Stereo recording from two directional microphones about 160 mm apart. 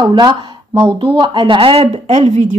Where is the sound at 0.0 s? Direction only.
25° right (ahead or behind).